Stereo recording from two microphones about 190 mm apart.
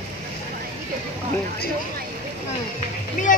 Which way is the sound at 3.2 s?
40° left (ahead or behind).